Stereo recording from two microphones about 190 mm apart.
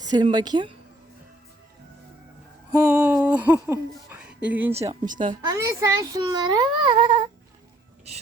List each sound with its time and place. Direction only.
0.0 s a child's voice: 20° right (ahead or behind)
2.7 s a sound: 15° right (ahead or behind)
4.7 s speech: 35° right (ahead or behind)
5.5 s a child's voice: 15° right (ahead or behind)